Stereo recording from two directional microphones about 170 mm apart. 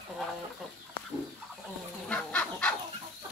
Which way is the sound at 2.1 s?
5° left (ahead or behind).